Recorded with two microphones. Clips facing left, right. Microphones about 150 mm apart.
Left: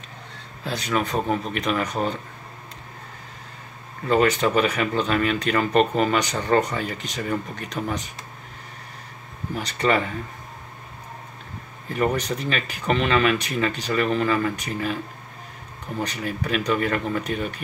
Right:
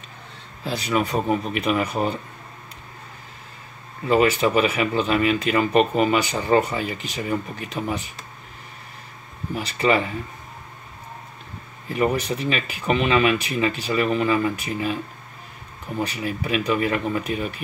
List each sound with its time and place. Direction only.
0.7 s speech: 5° right (ahead or behind)
4.1 s speech: 10° right (ahead or behind)
9.6 s speech: 5° right (ahead or behind)
11.9 s speech: 5° right (ahead or behind)
16.0 s speech: 10° right (ahead or behind)